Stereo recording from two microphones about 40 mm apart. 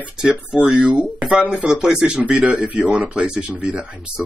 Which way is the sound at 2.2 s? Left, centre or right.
Right.